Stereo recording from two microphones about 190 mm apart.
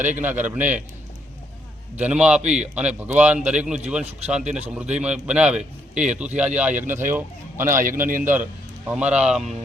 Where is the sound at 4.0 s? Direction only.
35° right (ahead or behind).